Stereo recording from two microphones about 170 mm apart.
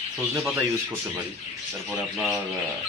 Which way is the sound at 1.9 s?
5° right (ahead or behind).